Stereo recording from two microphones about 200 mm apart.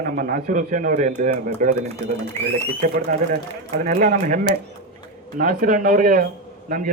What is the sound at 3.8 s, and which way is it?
A man's voice, 45° right (ahead or behind).